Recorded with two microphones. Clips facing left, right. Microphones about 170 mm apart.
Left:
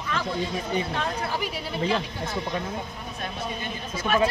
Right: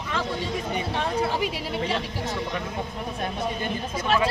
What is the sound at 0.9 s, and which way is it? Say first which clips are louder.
Speech: right 3 dB; 25° right (ahead or behind).